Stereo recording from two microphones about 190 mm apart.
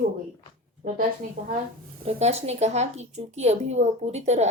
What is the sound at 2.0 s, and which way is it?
A woman's voice, 35° right (ahead or behind).